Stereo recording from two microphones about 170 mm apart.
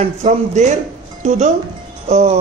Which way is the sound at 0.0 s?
40° right (ahead or behind).